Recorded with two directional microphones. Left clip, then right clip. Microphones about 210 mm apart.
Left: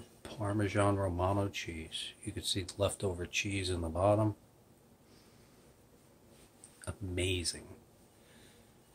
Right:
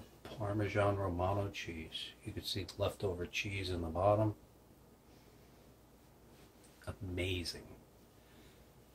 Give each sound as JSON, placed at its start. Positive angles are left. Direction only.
{"t": 0.2, "sound": "speech", "side_deg": 40}
{"t": 6.8, "sound": "speech", "side_deg": 40}